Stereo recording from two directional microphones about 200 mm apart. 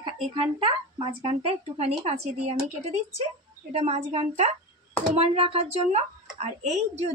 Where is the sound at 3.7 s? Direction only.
30° right (ahead or behind).